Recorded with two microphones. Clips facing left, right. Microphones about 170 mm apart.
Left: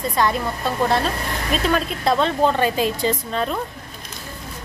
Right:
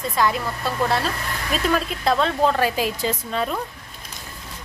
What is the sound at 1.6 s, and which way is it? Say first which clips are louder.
Speech: even; centre (ahead or behind).